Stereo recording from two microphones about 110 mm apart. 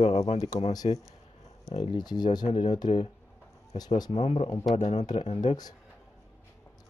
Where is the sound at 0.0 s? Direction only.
70° left (ahead or behind).